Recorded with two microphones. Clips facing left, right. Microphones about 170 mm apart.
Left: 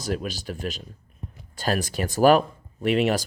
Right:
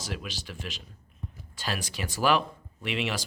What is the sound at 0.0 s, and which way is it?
Speech, 45° left (ahead or behind).